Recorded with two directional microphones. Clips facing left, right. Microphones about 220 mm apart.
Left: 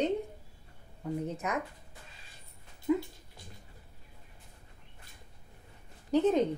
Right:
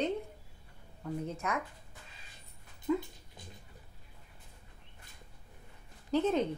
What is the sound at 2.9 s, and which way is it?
Speech, 10° left (ahead or behind).